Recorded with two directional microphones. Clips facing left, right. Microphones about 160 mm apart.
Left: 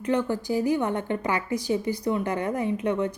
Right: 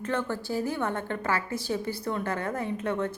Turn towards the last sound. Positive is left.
turn(degrees=15)  # may be behind; listen again after turning